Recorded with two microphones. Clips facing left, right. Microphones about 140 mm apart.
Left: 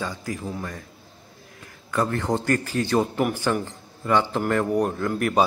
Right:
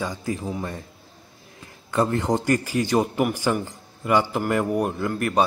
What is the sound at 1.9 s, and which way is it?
A man's voice, 20° right (ahead or behind).